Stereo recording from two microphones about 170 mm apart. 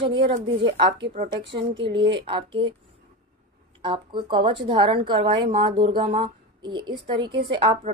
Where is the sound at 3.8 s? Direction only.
25° right (ahead or behind).